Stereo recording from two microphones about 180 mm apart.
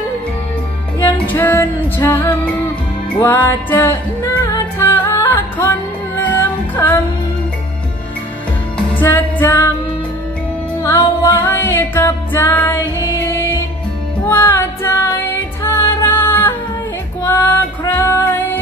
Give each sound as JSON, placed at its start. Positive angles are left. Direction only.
{"t": 1.1, "sound": "music", "side_deg": 10}
{"t": 8.9, "sound": "music", "side_deg": 10}
{"t": 10.8, "sound": "music", "side_deg": 20}
{"t": 11.4, "sound": "music", "side_deg": 10}
{"t": 14.2, "sound": "music", "side_deg": 10}